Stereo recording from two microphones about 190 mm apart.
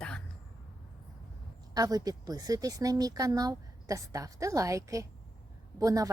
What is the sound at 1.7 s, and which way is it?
Speech, 20° right (ahead or behind).